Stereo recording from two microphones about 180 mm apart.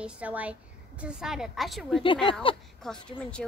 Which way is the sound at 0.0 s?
5° right (ahead or behind).